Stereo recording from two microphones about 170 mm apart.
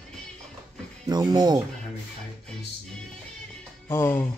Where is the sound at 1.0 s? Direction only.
25° right (ahead or behind).